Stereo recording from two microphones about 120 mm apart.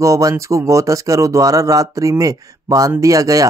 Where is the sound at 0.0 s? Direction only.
25° right (ahead or behind).